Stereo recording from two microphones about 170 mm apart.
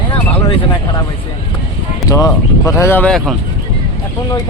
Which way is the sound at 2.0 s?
20° left (ahead or behind).